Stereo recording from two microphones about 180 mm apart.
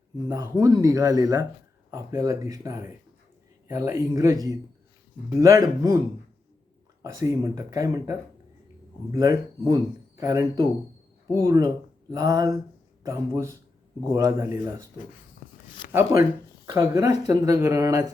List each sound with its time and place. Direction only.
0.3 s speech: 20° right (ahead or behind)
5.4 s speech: 20° right (ahead or behind)
7.0 s speech: 20° right (ahead or behind)
9.1 s speech: 20° right (ahead or behind)
15.9 s speech: 15° right (ahead or behind)